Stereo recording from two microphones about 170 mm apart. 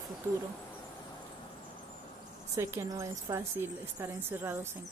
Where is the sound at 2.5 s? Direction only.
15° right (ahead or behind).